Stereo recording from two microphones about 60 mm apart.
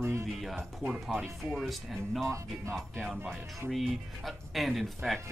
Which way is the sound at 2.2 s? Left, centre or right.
Right.